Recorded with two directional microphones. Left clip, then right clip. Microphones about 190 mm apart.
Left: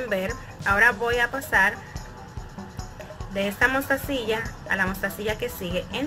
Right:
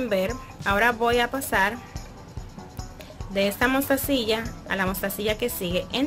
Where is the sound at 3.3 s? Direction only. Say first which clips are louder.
Even; 35° right (ahead or behind).